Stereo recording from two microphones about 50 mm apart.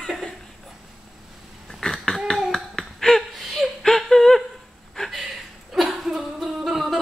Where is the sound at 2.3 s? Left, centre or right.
Centre.